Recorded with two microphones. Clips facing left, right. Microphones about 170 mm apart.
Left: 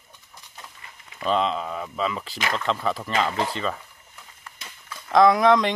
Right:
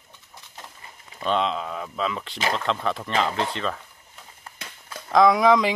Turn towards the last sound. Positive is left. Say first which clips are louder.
# even
turn(degrees=0)  # may be behind; listen again after turning